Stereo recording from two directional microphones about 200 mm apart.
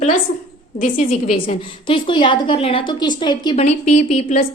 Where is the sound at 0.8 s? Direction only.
40° left (ahead or behind).